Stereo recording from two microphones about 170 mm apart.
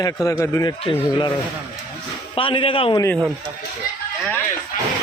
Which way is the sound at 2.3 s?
30° left (ahead or behind).